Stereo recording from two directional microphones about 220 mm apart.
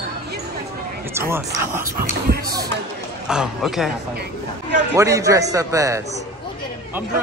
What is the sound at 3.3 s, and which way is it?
Speech, 5° right (ahead or behind).